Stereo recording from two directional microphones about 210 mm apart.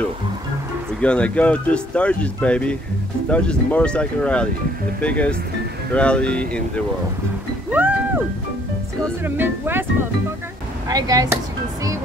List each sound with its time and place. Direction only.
1.0 s speech: 5° left (ahead or behind)
7.7 s music: 10° right (ahead or behind)
9.2 s speech: 10° right (ahead or behind)
10.9 s speech: 15° right (ahead or behind)